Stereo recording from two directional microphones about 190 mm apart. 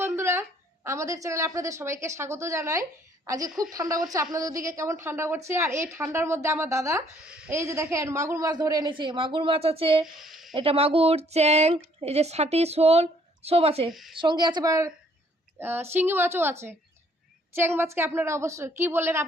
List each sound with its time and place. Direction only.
0.0 s a sound: 15° right (ahead or behind)
0.9 s a woman's voice: 15° right (ahead or behind)
7.3 s a woman's voice: 5° right (ahead or behind)
7.5 s a woman's voice: 15° right (ahead or behind)
10.0 s speech: centre (ahead or behind)
10.5 s speech: 30° right (ahead or behind)
13.9 s a woman's voice: centre (ahead or behind)
14.2 s a woman's voice: 25° right (ahead or behind)